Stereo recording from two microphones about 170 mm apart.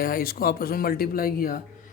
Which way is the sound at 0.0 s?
60° left (ahead or behind).